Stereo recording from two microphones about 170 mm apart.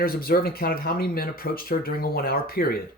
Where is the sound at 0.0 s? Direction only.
60° left (ahead or behind).